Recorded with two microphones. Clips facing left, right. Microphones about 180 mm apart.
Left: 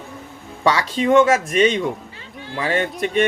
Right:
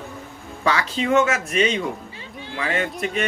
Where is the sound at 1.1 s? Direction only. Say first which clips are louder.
Left 5 dB; 30° left (ahead or behind).